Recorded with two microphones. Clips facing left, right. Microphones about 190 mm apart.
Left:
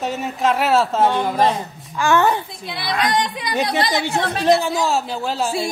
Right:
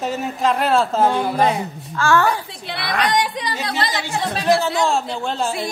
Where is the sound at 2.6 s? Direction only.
65° right (ahead or behind).